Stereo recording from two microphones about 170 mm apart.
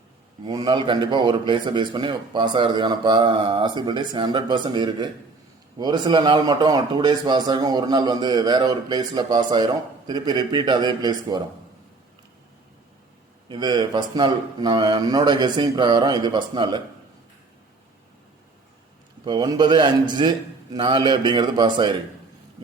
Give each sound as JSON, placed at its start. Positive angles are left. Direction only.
{"t": 0.4, "sound": "a man's voice", "side_deg": -25}
{"t": 13.5, "sound": "a man's voice", "side_deg": -25}
{"t": 19.2, "sound": "a man's voice", "side_deg": -25}